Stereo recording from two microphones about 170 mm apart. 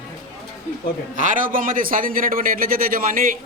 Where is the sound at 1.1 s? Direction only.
50° right (ahead or behind).